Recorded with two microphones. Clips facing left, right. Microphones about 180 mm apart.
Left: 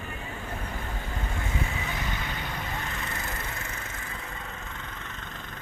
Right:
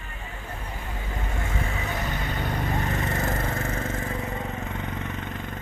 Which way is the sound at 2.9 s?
45° right (ahead or behind).